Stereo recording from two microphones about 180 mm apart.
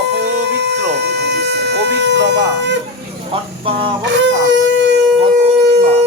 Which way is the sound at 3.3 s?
30° right (ahead or behind).